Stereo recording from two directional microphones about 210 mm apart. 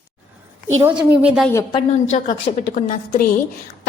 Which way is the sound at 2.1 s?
35° left (ahead or behind).